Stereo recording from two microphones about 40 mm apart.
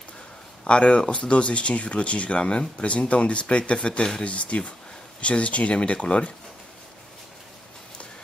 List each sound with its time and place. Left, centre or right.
0.7 s speech: left